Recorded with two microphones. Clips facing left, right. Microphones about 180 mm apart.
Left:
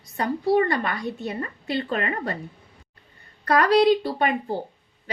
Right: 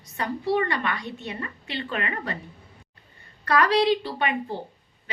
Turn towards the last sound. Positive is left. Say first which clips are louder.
# left 3 dB
turn(degrees=40)  # may be behind; listen again after turning